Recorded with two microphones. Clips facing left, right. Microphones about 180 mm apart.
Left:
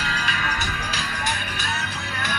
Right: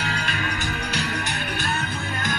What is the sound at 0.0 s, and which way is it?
Music, 55° right (ahead or behind).